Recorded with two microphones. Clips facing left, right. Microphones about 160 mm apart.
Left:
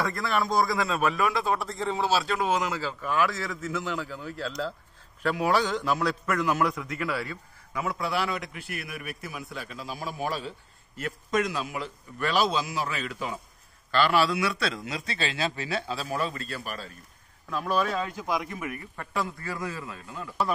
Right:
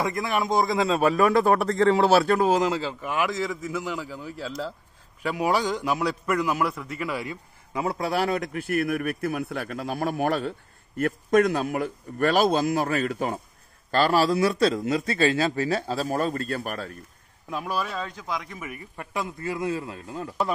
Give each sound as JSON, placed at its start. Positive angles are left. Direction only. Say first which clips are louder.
{"t": 0.0, "sound": "a man's voice", "louder": "right 2 dB", "side_deg": -15}
{"t": 7.7, "sound": "a man's voice", "louder": "right 4 dB", "side_deg": -30}
{"t": 8.1, "sound": "a man's voice", "louder": "right 5 dB", "side_deg": -45}
{"t": 17.5, "sound": "a man's voice", "louder": "left 2 dB", "side_deg": -10}
{"t": 18.9, "sound": "a man's voice", "louder": "right 2 dB", "side_deg": -20}